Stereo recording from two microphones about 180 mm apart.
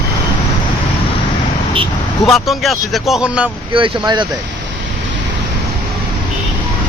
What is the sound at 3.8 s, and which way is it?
Speech, 25° right (ahead or behind).